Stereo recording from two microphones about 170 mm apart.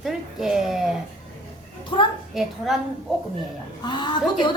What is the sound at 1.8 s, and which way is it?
Speech, 30° left (ahead or behind).